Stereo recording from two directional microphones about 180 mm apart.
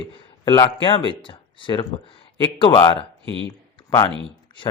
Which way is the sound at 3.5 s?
20° left (ahead or behind).